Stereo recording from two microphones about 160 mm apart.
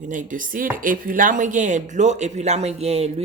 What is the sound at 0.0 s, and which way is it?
A woman's voice, 55° right (ahead or behind).